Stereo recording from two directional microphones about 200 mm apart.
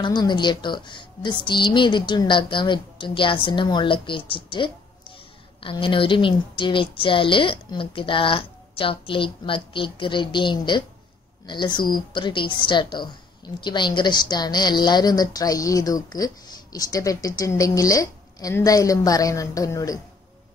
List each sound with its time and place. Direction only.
0.0 s a woman's voice: 20° left (ahead or behind)